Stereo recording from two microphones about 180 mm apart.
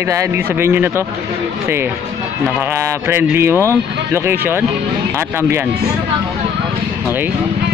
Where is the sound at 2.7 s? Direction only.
15° right (ahead or behind).